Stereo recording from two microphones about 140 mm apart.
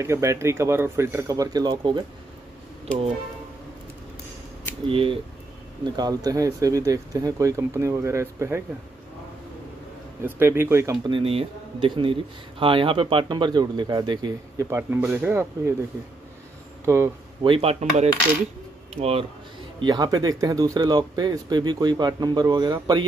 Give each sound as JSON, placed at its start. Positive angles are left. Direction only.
{"t": 0.0, "sound": "speech", "side_deg": -20}
{"t": 4.8, "sound": "speech", "side_deg": -40}
{"t": 5.9, "sound": "speech", "side_deg": -30}
{"t": 10.2, "sound": "speech", "side_deg": -15}
{"t": 11.1, "sound": "speech", "side_deg": -40}
{"t": 16.8, "sound": "speech", "side_deg": -20}
{"t": 17.4, "sound": "speech", "side_deg": -40}
{"t": 19.8, "sound": "speech", "side_deg": -30}